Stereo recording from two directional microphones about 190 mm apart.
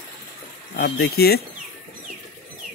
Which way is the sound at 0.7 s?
55° left (ahead or behind).